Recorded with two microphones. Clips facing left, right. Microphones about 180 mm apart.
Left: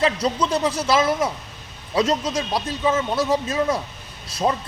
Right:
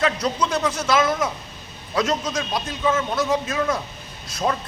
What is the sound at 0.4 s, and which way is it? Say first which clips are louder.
A man's voice: left 1 dB; 35° left (ahead or behind).